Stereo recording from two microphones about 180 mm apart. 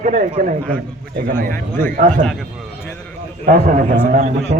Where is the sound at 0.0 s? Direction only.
45° right (ahead or behind).